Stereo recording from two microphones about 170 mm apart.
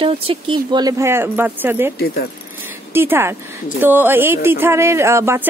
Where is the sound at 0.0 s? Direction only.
35° right (ahead or behind).